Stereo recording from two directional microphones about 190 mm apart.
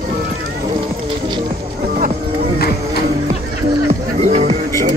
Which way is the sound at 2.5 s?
55° left (ahead or behind).